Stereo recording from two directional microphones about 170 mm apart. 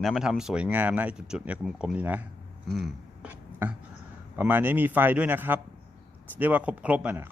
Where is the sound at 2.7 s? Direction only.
Centre (ahead or behind).